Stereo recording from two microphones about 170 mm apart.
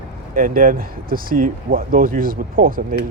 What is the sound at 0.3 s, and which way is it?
Speech, 55° right (ahead or behind).